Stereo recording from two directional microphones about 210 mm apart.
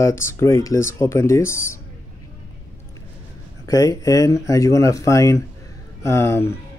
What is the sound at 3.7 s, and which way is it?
A man's voice, 15° left (ahead or behind).